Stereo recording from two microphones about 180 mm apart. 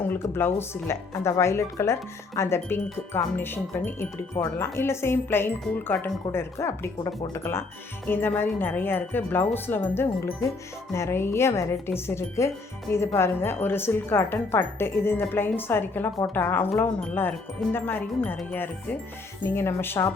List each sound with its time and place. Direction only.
0.3 s speech: 15° left (ahead or behind)